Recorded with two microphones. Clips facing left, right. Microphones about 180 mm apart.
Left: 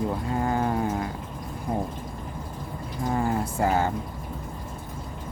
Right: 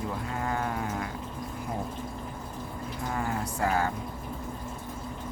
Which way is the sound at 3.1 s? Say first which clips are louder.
Left 7 dB; 30° left (ahead or behind).